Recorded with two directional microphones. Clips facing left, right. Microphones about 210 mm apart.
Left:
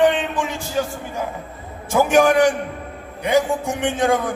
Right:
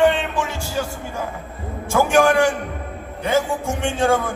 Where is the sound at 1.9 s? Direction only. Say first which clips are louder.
Left 1 dB; 15° left (ahead or behind).